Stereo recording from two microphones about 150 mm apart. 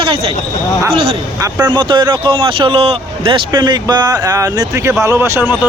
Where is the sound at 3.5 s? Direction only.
25° right (ahead or behind).